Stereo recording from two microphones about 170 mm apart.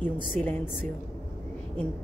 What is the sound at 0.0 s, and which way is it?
Speech, 10° left (ahead or behind).